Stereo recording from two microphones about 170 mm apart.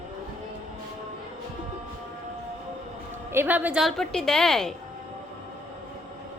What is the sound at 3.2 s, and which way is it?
A woman's voice, 10° right (ahead or behind).